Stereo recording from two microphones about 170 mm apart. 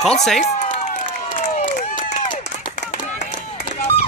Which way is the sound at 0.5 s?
45° left (ahead or behind).